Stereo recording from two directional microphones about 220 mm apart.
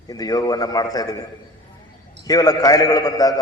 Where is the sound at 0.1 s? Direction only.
15° left (ahead or behind).